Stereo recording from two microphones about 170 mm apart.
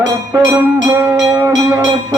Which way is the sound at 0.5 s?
15° right (ahead or behind).